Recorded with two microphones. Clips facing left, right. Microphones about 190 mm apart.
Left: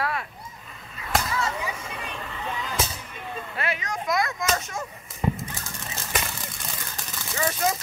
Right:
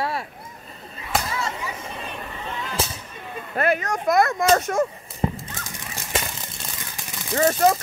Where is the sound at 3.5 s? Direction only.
50° right (ahead or behind).